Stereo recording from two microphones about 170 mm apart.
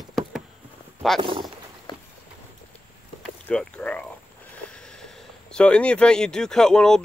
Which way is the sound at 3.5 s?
5° left (ahead or behind).